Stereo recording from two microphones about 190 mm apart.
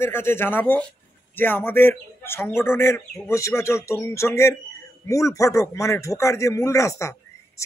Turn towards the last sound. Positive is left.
turn(degrees=15)  # may be behind; listen again after turning